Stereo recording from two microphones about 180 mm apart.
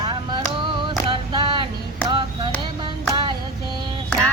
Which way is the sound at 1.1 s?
25° right (ahead or behind).